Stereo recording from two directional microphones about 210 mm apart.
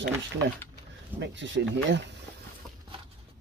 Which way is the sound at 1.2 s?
60° right (ahead or behind).